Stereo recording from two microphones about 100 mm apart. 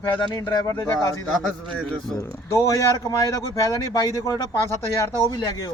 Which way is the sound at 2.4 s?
30° left (ahead or behind).